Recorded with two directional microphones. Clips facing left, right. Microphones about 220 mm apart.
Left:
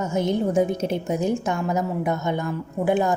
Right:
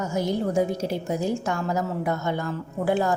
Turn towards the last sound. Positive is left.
turn(degrees=15)  # may be behind; listen again after turning